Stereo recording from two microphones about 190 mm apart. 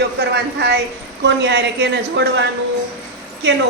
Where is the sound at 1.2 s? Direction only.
65° right (ahead or behind).